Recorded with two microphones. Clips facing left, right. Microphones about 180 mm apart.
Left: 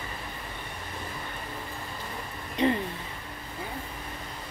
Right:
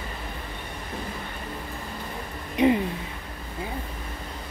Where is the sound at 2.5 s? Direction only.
15° right (ahead or behind).